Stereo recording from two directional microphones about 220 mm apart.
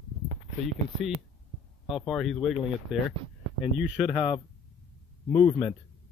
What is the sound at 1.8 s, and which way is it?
Speech, centre (ahead or behind).